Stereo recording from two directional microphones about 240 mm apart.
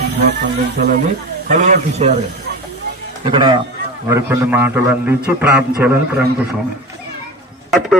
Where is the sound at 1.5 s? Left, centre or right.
Right.